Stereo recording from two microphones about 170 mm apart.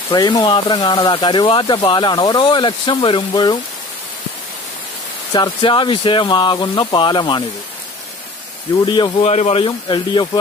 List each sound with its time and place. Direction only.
0.1 s speech: 25° left (ahead or behind)
5.3 s speech: 25° left (ahead or behind)
8.8 s speech: 30° left (ahead or behind)
9.3 s speech: 40° left (ahead or behind)